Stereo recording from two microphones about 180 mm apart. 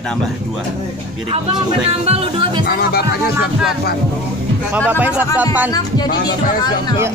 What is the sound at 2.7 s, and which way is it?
Speech, 60° left (ahead or behind).